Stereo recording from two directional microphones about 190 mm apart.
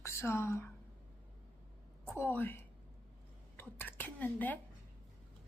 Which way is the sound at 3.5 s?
10° left (ahead or behind).